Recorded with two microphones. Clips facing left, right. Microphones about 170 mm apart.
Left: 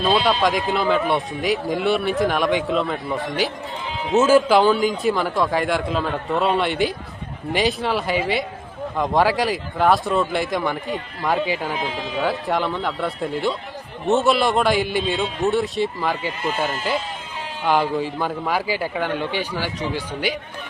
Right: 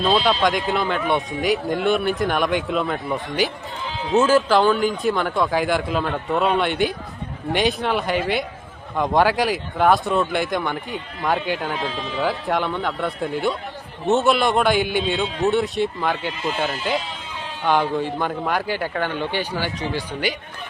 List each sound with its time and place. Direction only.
0.0 s speech: centre (ahead or behind)